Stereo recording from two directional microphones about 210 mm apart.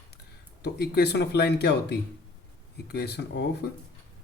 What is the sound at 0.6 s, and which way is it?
Speech, 50° left (ahead or behind).